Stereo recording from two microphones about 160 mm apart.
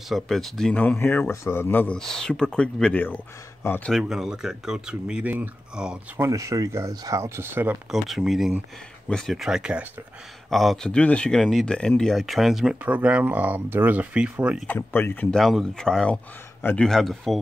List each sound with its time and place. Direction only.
0.1 s speech: centre (ahead or behind)
3.9 s speech: centre (ahead or behind)
6.2 s speech: 20° right (ahead or behind)
8.1 s speech: centre (ahead or behind)
14.7 s speech: 10° left (ahead or behind)
15.3 s speech: centre (ahead or behind)